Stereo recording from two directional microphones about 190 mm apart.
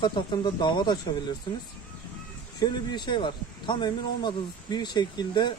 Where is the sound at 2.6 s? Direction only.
20° left (ahead or behind).